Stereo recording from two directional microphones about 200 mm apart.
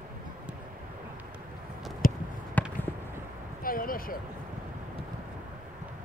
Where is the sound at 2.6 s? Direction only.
10° left (ahead or behind).